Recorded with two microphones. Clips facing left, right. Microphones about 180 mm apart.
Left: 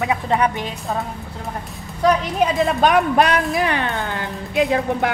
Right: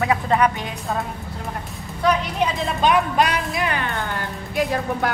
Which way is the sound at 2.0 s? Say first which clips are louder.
Left 3 dB; 50° left (ahead or behind).